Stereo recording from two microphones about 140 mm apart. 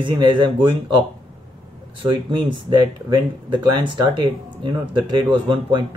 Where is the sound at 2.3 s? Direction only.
35° right (ahead or behind).